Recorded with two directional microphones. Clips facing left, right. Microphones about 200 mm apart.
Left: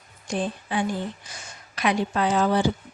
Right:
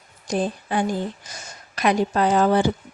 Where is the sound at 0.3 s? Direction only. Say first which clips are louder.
Right 4 dB; 40° right (ahead or behind).